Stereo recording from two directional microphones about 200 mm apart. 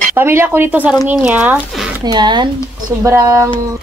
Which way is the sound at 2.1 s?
20° right (ahead or behind).